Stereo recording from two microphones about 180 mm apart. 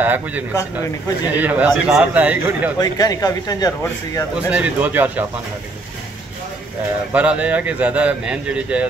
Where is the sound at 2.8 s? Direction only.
20° left (ahead or behind).